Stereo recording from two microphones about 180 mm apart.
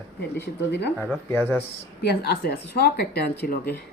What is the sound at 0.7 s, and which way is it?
Speech, 70° left (ahead or behind).